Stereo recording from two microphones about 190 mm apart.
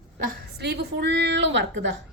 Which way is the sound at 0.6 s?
60° right (ahead or behind).